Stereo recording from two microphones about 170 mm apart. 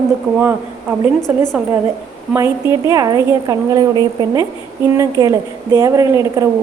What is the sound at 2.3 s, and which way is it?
A woman's voice, 20° right (ahead or behind).